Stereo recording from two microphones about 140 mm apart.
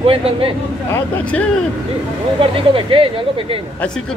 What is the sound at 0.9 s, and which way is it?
Speech, 10° left (ahead or behind).